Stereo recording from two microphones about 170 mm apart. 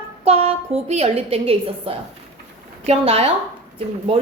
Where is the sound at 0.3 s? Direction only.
35° right (ahead or behind).